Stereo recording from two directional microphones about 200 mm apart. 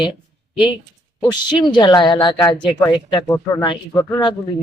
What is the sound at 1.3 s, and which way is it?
Speech, 20° left (ahead or behind).